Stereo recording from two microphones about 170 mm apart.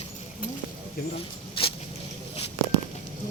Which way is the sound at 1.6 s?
30° left (ahead or behind).